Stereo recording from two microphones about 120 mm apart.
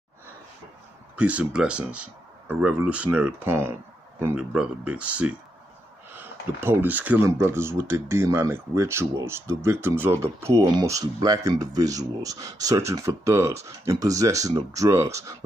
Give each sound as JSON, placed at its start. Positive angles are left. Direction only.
{"t": 1.1, "sound": "speech", "side_deg": -10}
{"t": 4.4, "sound": "speech", "side_deg": -10}